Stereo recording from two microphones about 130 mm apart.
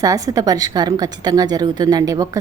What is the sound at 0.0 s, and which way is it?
A woman's voice, 25° right (ahead or behind).